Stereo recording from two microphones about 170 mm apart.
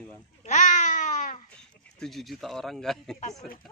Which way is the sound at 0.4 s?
45° left (ahead or behind).